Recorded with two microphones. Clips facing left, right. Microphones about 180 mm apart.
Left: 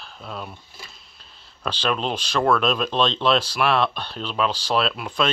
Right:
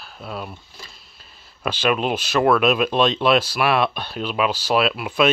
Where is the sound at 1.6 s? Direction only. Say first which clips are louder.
Right 4 dB; 10° right (ahead or behind).